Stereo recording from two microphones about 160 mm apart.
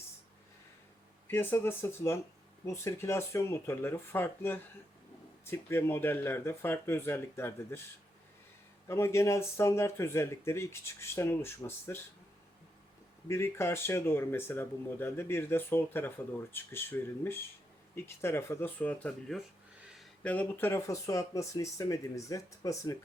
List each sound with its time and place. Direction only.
1.3 s speech: 15° left (ahead or behind)
8.9 s speech: 15° left (ahead or behind)
13.2 s speech: 15° left (ahead or behind)